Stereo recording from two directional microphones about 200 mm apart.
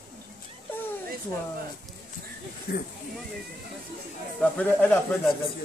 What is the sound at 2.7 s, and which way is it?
Speech, 50° left (ahead or behind).